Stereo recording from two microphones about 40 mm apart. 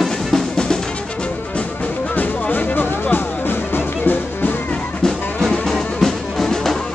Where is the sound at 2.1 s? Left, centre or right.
Left.